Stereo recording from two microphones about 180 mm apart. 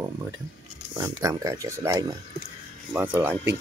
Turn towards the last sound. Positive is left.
turn(degrees=-10)  # may be behind; listen again after turning